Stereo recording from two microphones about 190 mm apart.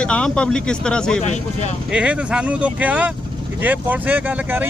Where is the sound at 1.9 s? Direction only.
5° right (ahead or behind).